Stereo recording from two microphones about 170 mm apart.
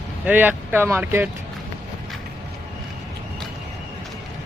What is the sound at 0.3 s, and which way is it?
Speech, 10° right (ahead or behind).